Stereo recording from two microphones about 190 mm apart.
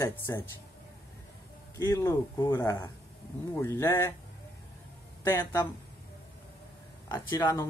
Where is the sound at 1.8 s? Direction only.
15° left (ahead or behind).